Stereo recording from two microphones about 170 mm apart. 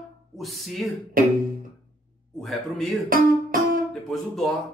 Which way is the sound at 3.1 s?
55° right (ahead or behind).